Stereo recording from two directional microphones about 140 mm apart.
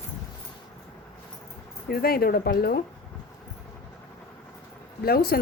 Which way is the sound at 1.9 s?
90° left.